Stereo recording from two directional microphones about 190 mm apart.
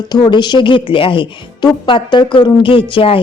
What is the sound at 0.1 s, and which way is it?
A woman's voice, 25° left (ahead or behind).